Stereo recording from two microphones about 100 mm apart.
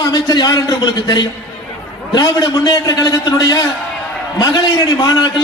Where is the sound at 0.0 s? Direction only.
40° left (ahead or behind).